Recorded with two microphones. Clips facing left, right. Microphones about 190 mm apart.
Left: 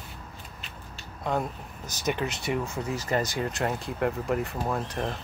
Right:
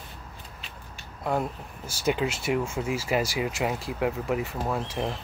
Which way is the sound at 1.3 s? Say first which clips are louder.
Right 1 dB; 10° right (ahead or behind).